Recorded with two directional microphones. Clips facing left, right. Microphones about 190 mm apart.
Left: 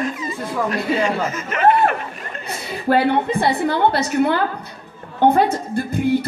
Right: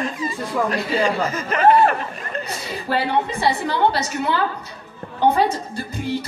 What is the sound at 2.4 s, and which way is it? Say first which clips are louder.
A woman's voice: left 5 dB; 55° left (ahead or behind).